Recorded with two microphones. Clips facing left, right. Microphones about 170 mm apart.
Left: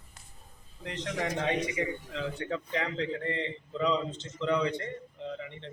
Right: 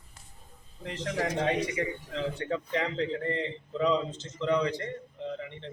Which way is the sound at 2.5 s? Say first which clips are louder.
Right 2 dB; 5° right (ahead or behind).